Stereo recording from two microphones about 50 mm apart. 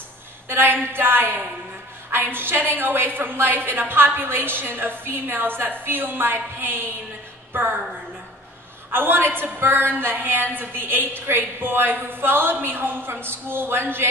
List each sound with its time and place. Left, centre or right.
0.5 s a woman's voice: right
8.9 s a woman's voice: right